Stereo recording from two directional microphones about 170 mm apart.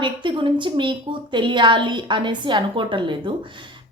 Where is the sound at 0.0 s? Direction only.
30° right (ahead or behind).